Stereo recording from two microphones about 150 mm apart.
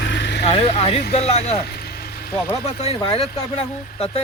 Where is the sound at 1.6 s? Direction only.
90° left.